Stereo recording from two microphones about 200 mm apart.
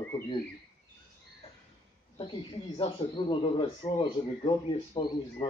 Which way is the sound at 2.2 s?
25° left (ahead or behind).